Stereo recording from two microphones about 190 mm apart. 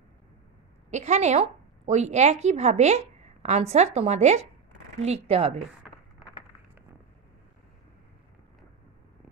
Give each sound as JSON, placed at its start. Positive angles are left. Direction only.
{"t": 0.8, "sound": "a woman's voice", "side_deg": -35}